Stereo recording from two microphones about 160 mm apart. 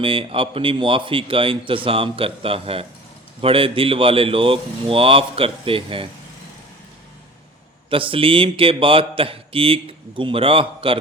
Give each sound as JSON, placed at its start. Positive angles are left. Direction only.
{"t": 0.0, "sound": "a man's voice", "side_deg": -35}
{"t": 7.9, "sound": "a man's voice", "side_deg": -35}